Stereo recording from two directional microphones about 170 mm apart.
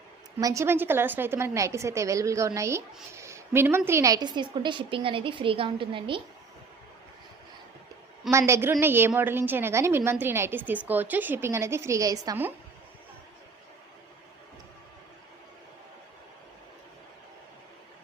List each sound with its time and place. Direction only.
0.3 s a woman's voice: 20° right (ahead or behind)
8.3 s a woman's voice: 15° right (ahead or behind)